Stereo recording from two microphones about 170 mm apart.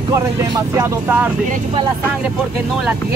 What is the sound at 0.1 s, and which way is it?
Speech, 15° right (ahead or behind).